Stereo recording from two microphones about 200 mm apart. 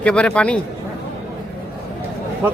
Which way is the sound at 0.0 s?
5° left (ahead or behind).